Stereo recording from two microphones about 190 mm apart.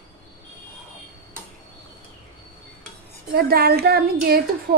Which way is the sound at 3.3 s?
55° right (ahead or behind).